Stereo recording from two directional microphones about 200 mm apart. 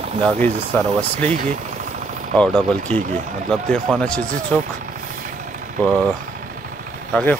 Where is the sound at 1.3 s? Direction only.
35° right (ahead or behind).